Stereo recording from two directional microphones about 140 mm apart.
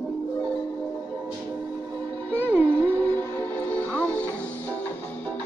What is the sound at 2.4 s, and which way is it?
Music, 15° right (ahead or behind).